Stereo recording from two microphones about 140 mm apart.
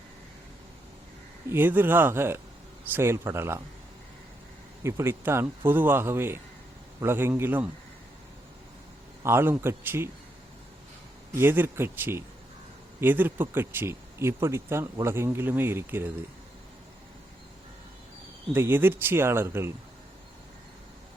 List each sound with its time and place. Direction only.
1.5 s speech: 15° right (ahead or behind)
4.8 s speech: 20° right (ahead or behind)
9.2 s speech: 15° right (ahead or behind)
11.3 s speech: 15° right (ahead or behind)
18.5 s speech: 15° right (ahead or behind)